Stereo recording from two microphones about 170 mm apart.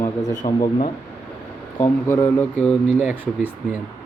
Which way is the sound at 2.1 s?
10° left (ahead or behind).